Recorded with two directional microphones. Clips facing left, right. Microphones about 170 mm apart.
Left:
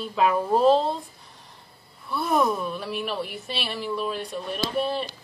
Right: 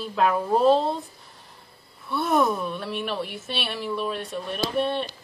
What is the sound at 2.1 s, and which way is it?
A woman's voice, centre (ahead or behind).